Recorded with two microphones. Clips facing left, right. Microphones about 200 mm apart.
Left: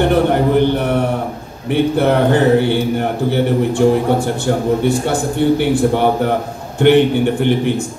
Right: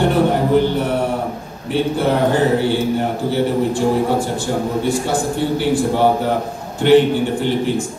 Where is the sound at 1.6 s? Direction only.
60° left (ahead or behind).